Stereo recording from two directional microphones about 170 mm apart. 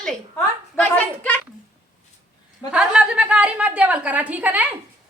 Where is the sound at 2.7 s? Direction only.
5° right (ahead or behind).